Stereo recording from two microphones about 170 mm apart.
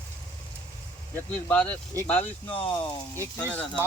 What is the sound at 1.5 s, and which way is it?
Speech, 10° left (ahead or behind).